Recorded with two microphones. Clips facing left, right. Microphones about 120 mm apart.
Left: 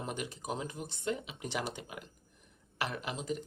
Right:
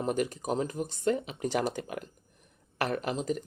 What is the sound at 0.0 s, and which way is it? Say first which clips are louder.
Speech: right 9 dB; 45° right (ahead or behind).